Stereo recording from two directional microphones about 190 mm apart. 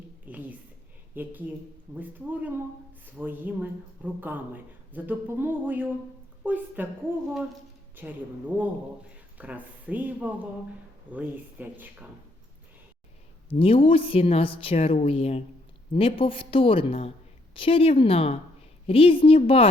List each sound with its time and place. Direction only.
0.3 s a sound: 10° right (ahead or behind)
1.1 s a woman's voice: 10° right (ahead or behind)
7.9 s speech: 10° right (ahead or behind)
13.5 s speech: 30° left (ahead or behind)